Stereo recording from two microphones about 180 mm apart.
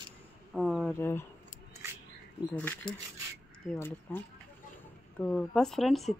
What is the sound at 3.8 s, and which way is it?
Speech, 10° left (ahead or behind).